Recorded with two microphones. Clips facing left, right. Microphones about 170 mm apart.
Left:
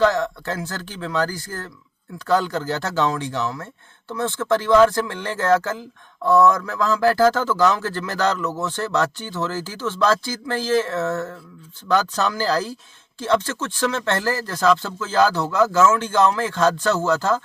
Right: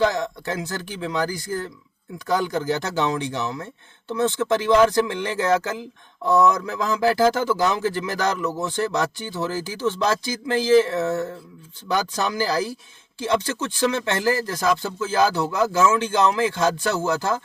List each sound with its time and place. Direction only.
0.0 s a man's voice: 15° right (ahead or behind)